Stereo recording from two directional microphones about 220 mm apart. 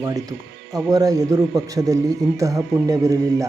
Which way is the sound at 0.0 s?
15° right (ahead or behind).